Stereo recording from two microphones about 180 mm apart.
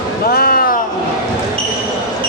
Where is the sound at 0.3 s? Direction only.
55° left (ahead or behind).